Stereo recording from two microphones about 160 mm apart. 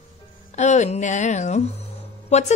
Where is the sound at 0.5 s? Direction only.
45° left (ahead or behind).